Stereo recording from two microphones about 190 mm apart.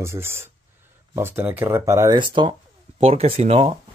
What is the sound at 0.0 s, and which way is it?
Speech, 15° right (ahead or behind).